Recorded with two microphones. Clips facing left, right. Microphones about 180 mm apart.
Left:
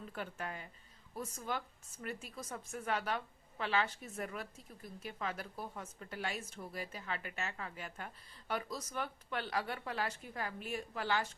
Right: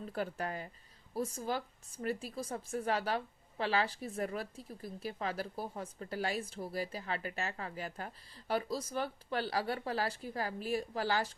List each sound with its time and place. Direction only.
0.0 s speech: 35° right (ahead or behind)